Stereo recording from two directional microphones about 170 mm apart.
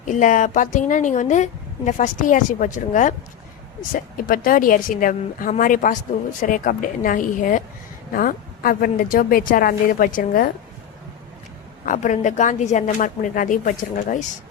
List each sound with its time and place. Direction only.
0.1 s a woman's voice: 50° left (ahead or behind)
11.9 s a woman's voice: 45° left (ahead or behind)